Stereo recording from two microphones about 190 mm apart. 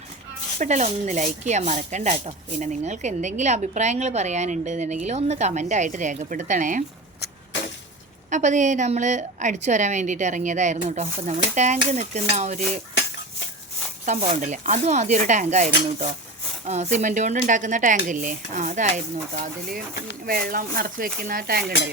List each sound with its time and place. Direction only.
0.6 s speech: 40° right (ahead or behind)
8.3 s speech: 40° right (ahead or behind)
14.0 s speech: 40° right (ahead or behind)